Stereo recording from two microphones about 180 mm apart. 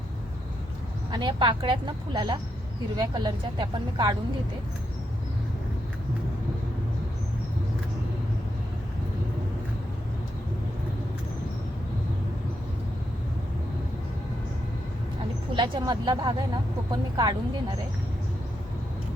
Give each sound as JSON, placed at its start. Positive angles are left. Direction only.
{"t": 1.1, "sound": "a woman's voice", "side_deg": -25}
{"t": 15.5, "sound": "a woman's voice", "side_deg": -25}